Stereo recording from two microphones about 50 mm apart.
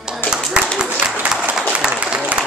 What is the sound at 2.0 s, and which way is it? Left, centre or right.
Applause, right.